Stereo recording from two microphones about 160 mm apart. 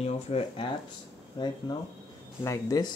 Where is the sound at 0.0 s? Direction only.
40° left (ahead or behind).